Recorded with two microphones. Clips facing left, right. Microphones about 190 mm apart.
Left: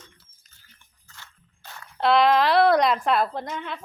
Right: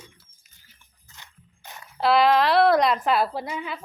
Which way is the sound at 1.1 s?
20° right (ahead or behind).